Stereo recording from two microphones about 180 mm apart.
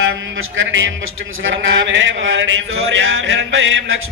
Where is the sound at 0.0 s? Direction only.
90° right.